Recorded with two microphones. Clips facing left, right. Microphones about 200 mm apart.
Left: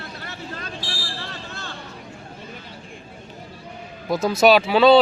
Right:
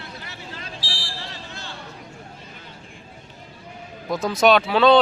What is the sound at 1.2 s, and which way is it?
Fire alarm, 55° left (ahead or behind).